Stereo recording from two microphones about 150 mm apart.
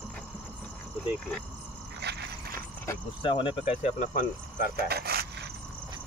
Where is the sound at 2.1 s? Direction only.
90° right.